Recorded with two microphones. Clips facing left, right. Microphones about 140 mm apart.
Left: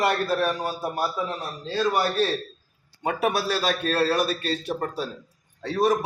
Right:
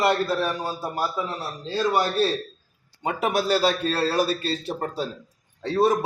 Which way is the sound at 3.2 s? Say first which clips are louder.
Right 4 dB; 30° right (ahead or behind).